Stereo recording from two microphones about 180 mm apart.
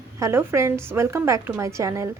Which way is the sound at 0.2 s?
15° right (ahead or behind).